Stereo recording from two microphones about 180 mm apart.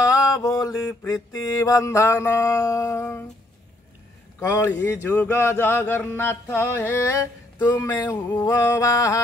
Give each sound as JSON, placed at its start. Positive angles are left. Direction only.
{"t": 0.0, "sound": "speech", "side_deg": 20}
{"t": 4.4, "sound": "speech", "side_deg": 15}